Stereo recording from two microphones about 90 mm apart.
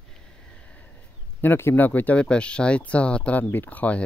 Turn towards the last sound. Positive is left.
turn(degrees=15)  # may be behind; listen again after turning